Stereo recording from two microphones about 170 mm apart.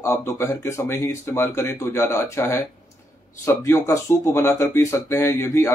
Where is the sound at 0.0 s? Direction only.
15° left (ahead or behind).